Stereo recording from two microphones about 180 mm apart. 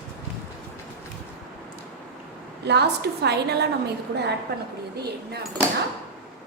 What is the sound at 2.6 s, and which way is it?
A woman's voice, 70° right (ahead or behind).